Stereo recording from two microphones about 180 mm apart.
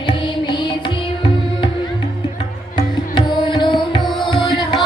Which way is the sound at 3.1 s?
25° left (ahead or behind).